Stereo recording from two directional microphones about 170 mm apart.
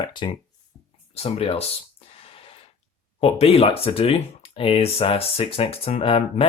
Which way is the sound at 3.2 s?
35° left (ahead or behind).